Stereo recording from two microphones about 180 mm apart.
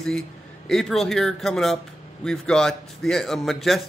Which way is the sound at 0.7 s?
Centre (ahead or behind).